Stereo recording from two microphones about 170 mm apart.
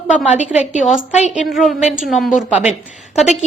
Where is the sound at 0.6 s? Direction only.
45° left (ahead or behind).